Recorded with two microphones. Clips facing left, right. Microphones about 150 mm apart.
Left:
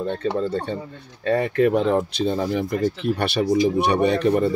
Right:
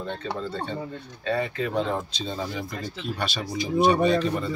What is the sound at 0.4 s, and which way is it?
Speech, 45° left (ahead or behind).